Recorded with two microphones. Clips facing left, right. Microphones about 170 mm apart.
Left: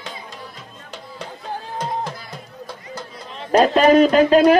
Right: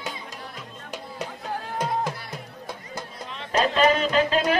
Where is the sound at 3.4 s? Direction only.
45° left (ahead or behind).